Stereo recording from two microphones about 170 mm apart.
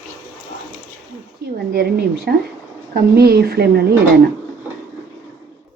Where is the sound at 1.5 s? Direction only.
70° right (ahead or behind).